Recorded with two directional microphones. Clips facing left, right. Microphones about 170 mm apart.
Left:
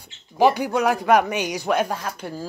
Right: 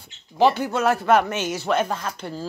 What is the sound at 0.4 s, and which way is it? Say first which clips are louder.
Speech: left 1 dB; 10° left (ahead or behind).